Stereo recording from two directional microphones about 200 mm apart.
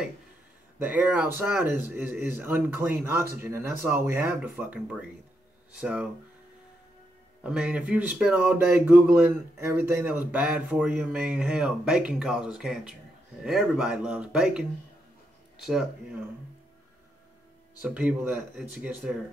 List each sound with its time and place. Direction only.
0.7 s speech: 10° right (ahead or behind)
7.4 s speech: 5° right (ahead or behind)
17.8 s speech: 5° right (ahead or behind)